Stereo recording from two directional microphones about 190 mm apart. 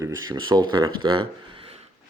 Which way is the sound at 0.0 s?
20° right (ahead or behind).